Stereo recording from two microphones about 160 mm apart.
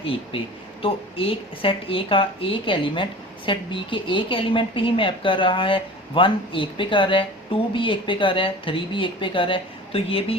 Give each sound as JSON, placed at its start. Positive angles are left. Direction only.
{"t": 0.0, "sound": "a woman's voice", "side_deg": 35}